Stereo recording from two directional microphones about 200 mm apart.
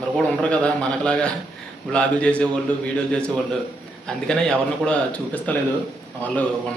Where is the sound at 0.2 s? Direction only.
5° left (ahead or behind).